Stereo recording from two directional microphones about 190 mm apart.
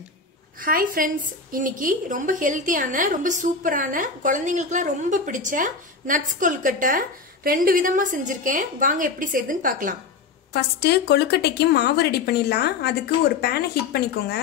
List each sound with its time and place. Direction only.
0.6 s a woman's voice: 45° right (ahead or behind)
10.5 s a woman's voice: 60° left (ahead or behind)